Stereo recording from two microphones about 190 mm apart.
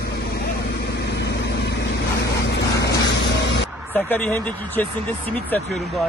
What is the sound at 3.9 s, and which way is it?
Speech, 10° left (ahead or behind).